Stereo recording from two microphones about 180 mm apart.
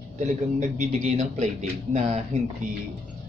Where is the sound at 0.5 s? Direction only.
40° right (ahead or behind).